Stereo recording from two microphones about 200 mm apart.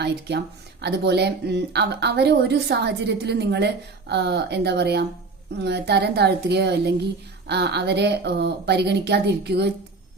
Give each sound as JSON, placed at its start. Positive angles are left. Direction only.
{"t": 0.0, "sound": "speech", "side_deg": -55}